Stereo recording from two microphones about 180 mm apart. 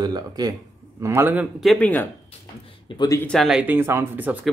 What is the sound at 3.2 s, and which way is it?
Speech, 5° left (ahead or behind).